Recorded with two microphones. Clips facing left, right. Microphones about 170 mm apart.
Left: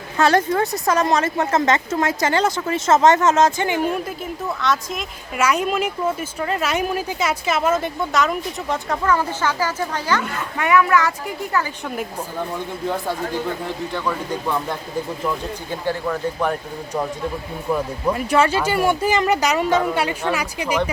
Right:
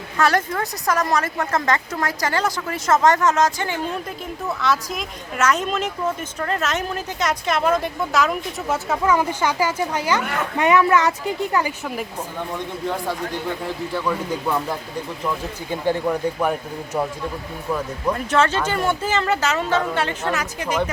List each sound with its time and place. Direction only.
0.2 s a woman's voice: 25° left (ahead or behind)
4.4 s speech: centre (ahead or behind)
5.4 s speech: 10° left (ahead or behind); by 10.2 s 10° right (ahead or behind)
10.6 s speech: 25° right (ahead or behind)
14.4 s speech: 5° right (ahead or behind)
15.9 s speech: 10° right (ahead or behind)
17.7 s speech: 10° left (ahead or behind)